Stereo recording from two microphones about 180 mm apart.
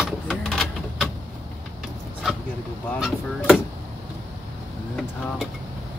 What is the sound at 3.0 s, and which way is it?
Speech, centre (ahead or behind).